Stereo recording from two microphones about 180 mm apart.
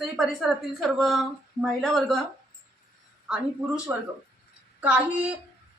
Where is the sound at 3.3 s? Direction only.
5° right (ahead or behind).